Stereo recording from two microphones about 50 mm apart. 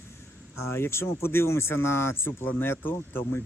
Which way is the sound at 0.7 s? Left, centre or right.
Left.